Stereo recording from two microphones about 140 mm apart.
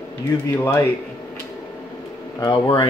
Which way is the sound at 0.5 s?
15° left (ahead or behind).